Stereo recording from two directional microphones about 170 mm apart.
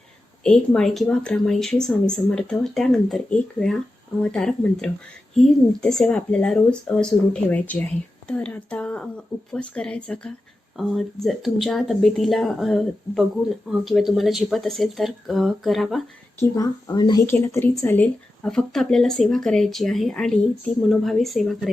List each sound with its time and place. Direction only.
0.4 s a woman's voice: 5° left (ahead or behind)
16.4 s speech: 20° left (ahead or behind)
17.2 s speech: 15° left (ahead or behind)